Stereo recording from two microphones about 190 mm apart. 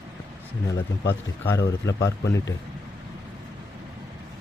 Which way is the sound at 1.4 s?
15° left (ahead or behind).